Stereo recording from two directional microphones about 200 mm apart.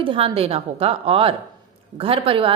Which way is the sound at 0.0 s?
25° right (ahead or behind).